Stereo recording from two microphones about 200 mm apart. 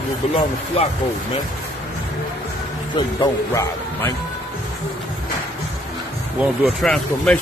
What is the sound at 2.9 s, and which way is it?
Speech, 20° left (ahead or behind).